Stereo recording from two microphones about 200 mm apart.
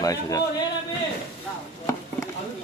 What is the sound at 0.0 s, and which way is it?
Speech, 15° left (ahead or behind).